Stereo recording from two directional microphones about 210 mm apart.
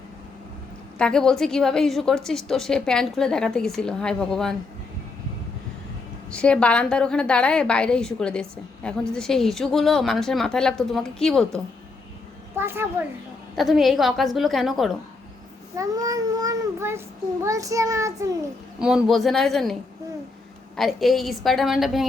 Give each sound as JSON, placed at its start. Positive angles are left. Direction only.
{"t": 0.9, "sound": "a woman's voice", "side_deg": 5}
{"t": 6.3, "sound": "a woman's voice", "side_deg": 5}
{"t": 12.5, "sound": "a woman's voice", "side_deg": -10}
{"t": 15.8, "sound": "speech", "side_deg": -15}
{"t": 18.8, "sound": "a woman's voice", "side_deg": -5}
{"t": 20.7, "sound": "a woman's voice", "side_deg": 0}